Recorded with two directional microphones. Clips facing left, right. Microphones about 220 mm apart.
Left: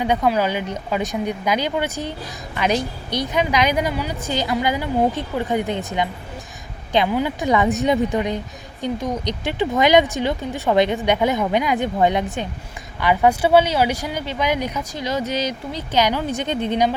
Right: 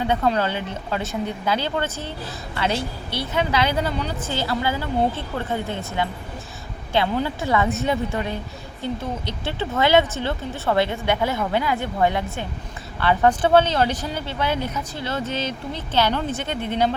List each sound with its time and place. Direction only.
0.0 s speech: 15° left (ahead or behind)